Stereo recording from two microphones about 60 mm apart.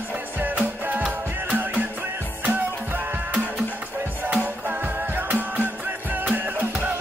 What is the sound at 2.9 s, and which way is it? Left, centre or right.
Music, right.